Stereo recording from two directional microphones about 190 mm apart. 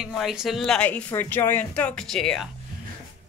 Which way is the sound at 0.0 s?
Centre (ahead or behind).